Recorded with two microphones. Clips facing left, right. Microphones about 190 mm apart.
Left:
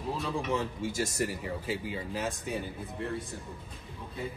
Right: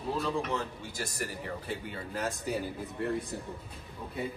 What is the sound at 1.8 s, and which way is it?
Speech, 5° left (ahead or behind).